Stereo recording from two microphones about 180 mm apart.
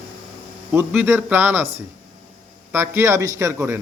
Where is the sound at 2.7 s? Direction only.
15° right (ahead or behind).